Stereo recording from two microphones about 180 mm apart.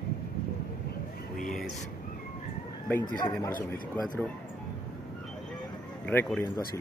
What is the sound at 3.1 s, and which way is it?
Speech, 20° left (ahead or behind).